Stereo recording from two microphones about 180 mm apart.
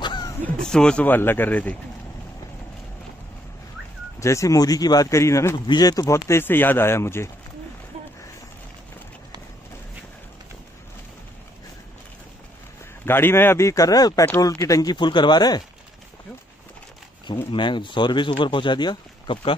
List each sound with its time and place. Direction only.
0.0 s crow: 25° left (ahead or behind)
0.6 s speech: 5° left (ahead or behind)
4.2 s speech: 15° left (ahead or behind)
13.0 s speech: 10° left (ahead or behind)
17.5 s speech: 25° left (ahead or behind)